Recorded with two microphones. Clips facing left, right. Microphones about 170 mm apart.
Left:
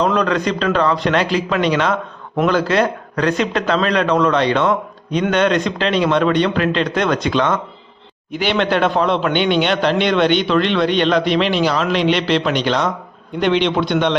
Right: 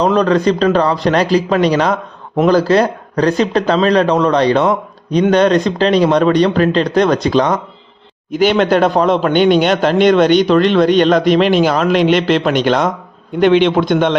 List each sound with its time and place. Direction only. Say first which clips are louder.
0.0 s a man's voice: right 5 dB; 35° right (ahead or behind)